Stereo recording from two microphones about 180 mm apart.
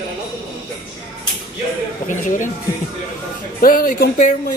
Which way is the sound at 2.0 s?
45° left (ahead or behind).